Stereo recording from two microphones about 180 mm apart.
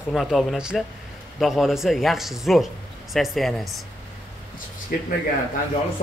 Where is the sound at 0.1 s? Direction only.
Centre (ahead or behind).